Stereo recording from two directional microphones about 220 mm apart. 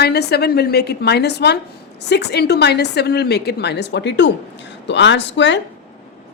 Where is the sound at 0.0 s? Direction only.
50° left (ahead or behind).